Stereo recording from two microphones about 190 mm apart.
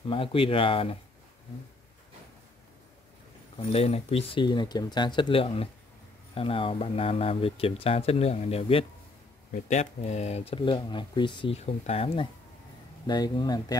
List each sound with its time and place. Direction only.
0.1 s speech: 30° left (ahead or behind)
3.5 s speech: 30° left (ahead or behind)